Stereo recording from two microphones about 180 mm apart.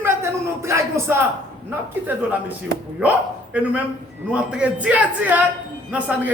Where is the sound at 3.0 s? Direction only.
5° right (ahead or behind).